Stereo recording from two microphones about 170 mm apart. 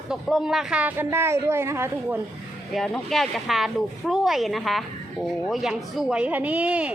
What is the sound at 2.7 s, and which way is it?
Speech, centre (ahead or behind).